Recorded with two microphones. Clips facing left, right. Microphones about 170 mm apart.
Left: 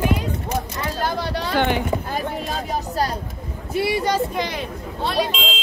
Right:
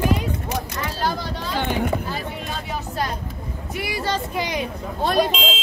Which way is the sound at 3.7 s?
25° left (ahead or behind).